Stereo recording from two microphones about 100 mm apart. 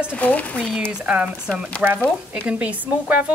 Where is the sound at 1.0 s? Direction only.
10° right (ahead or behind).